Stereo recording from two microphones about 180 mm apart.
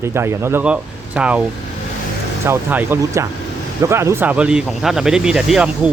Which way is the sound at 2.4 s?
10° right (ahead or behind).